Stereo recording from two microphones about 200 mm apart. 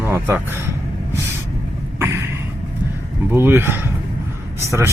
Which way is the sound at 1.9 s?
10° right (ahead or behind).